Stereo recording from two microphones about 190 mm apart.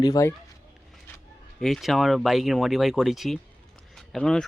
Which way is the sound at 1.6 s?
Centre (ahead or behind).